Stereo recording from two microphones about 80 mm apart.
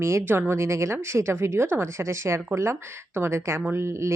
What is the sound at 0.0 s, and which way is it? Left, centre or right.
Speech, right.